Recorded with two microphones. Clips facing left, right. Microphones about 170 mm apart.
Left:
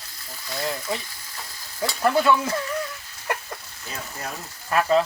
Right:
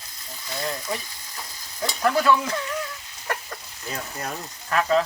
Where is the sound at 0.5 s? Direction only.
Centre (ahead or behind).